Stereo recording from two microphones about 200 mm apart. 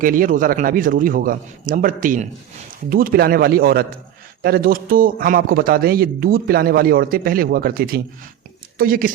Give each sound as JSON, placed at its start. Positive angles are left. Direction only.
{"t": 0.0, "sound": "speech", "side_deg": -45}